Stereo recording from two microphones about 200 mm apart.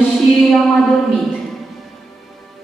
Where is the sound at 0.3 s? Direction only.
Centre (ahead or behind).